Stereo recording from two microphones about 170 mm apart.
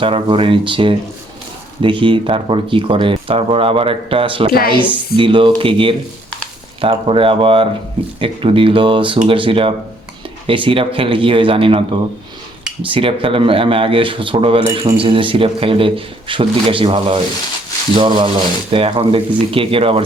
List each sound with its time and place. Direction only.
0.0 s speech: 30° right (ahead or behind)
4.5 s speech: 60° left (ahead or behind)
4.8 s speech: 30° right (ahead or behind)